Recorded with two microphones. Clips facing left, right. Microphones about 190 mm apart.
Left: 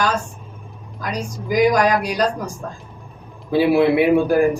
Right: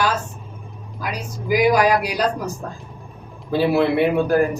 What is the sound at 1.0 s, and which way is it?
Speech, 5° right (ahead or behind).